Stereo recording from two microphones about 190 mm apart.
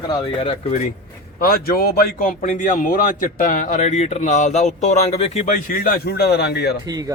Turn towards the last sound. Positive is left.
turn(degrees=60)  # may be behind; listen again after turning